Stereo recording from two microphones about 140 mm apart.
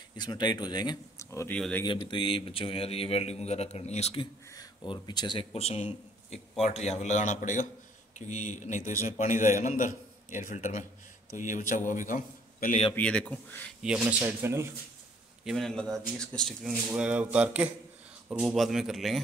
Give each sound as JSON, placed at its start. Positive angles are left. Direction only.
{"t": 0.2, "sound": "speech", "side_deg": 30}
{"t": 1.5, "sound": "speech", "side_deg": 10}
{"t": 1.9, "sound": "a man's voice", "side_deg": 35}
{"t": 4.6, "sound": "a man's voice", "side_deg": 35}
{"t": 12.9, "sound": "speech", "side_deg": 10}
{"t": 13.8, "sound": "speech", "side_deg": -10}
{"t": 15.4, "sound": "speech", "side_deg": 0}
{"t": 16.9, "sound": "speech", "side_deg": -10}